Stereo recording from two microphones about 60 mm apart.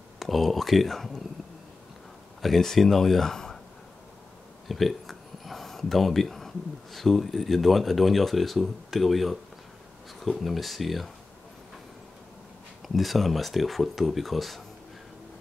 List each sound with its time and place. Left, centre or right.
0.2 s speech: centre
2.4 s speech: centre
4.6 s speech: centre
12.8 s speech: centre